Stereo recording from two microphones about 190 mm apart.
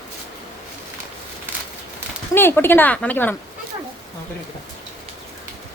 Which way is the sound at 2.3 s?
10° left (ahead or behind).